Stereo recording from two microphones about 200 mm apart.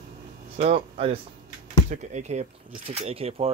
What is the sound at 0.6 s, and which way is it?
Speech, 30° right (ahead or behind).